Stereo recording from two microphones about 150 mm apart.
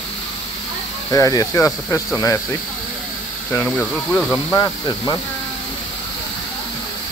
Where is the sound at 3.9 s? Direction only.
5° left (ahead or behind).